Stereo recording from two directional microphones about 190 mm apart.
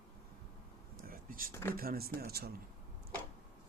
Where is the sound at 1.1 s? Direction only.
50° right (ahead or behind).